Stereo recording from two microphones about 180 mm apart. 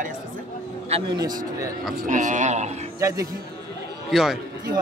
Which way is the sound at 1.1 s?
20° right (ahead or behind).